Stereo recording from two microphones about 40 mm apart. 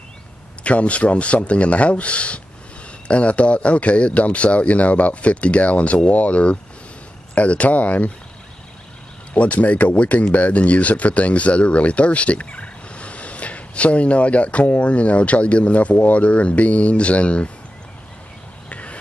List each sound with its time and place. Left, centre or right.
0.7 s speech: left
9.3 s speech: left
18.7 s a sound: left